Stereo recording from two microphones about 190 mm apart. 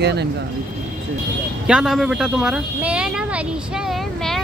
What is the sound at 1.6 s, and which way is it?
Speech, 5° right (ahead or behind).